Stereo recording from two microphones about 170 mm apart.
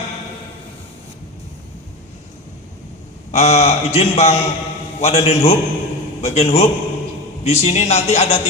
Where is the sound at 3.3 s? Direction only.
40° left (ahead or behind).